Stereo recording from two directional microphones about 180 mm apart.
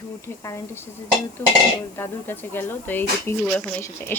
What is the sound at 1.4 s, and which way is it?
Speech, 15° left (ahead or behind).